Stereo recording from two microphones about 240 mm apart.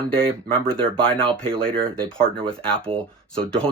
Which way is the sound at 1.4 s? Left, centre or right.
Right.